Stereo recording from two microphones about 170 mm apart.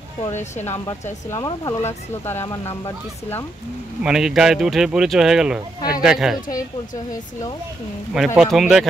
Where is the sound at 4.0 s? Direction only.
5° right (ahead or behind).